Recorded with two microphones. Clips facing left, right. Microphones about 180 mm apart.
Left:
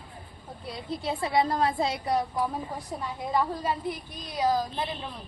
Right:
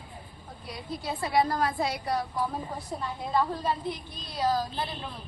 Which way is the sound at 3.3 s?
10° left (ahead or behind).